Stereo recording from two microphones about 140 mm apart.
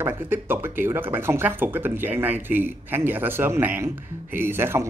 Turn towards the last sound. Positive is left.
turn(degrees=-15)  # may be behind; listen again after turning